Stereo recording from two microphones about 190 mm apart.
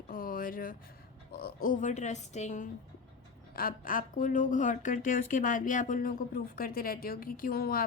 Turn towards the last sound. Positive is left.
turn(degrees=50)  # may be behind; listen again after turning